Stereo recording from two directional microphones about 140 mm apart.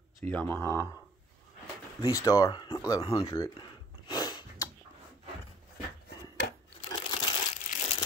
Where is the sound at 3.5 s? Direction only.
35° left (ahead or behind).